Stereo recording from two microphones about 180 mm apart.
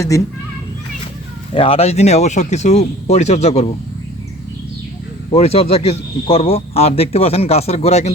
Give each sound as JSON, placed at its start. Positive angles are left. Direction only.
{"t": 1.5, "sound": "speech", "side_deg": 30}
{"t": 5.3, "sound": "speech", "side_deg": 35}